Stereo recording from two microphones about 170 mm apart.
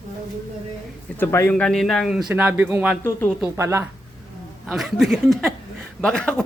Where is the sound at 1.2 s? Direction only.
15° left (ahead or behind); by 2.9 s 10° right (ahead or behind).